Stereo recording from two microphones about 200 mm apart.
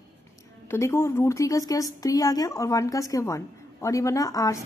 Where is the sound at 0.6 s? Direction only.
15° left (ahead or behind).